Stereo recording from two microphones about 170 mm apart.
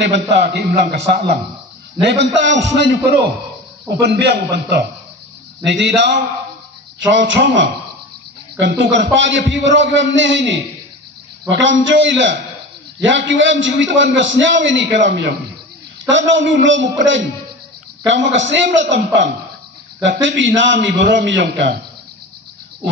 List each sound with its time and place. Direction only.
0.1 s a man's voice: 70° right (ahead or behind)
2.0 s a man's voice: 90° right
4.0 s a man's voice: 75° right (ahead or behind)
5.6 s a man's voice: 90° right
18.0 s a man's voice: 90° right